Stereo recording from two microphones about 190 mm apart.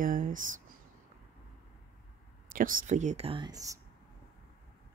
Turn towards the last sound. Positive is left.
turn(degrees=-20)  # may be behind; listen again after turning